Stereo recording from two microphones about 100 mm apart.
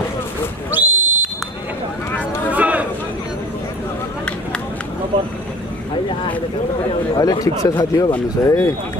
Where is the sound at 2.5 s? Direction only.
15° right (ahead or behind).